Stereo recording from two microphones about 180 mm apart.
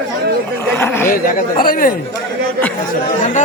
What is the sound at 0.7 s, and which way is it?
Speech, 10° left (ahead or behind).